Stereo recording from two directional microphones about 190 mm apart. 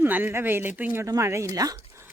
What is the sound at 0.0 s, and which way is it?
Speech, 10° right (ahead or behind).